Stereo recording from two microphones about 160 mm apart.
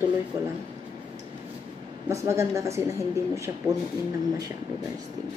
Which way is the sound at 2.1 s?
15° right (ahead or behind).